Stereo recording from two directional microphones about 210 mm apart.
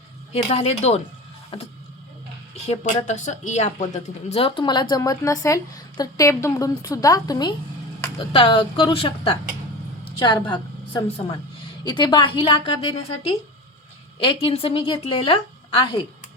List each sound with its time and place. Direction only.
0.5 s speech: 30° left (ahead or behind)
10.0 s a sound: 20° left (ahead or behind)
11.8 s speech: 20° left (ahead or behind)
14.2 s speech: 25° left (ahead or behind)